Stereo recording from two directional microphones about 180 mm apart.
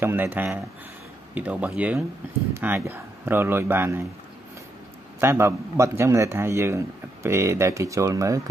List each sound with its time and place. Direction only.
0.0 s speech: 10° right (ahead or behind)
5.2 s speech: 15° right (ahead or behind)